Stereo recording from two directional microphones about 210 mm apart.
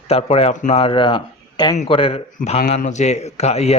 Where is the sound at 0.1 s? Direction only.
30° left (ahead or behind).